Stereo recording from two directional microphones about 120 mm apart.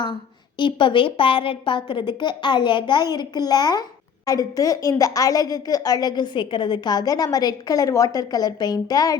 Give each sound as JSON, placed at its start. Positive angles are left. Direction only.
{"t": 0.6, "sound": "a woman's voice", "side_deg": 45}